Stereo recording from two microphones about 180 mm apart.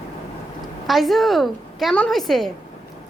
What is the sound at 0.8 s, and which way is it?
A woman's voice, centre (ahead or behind).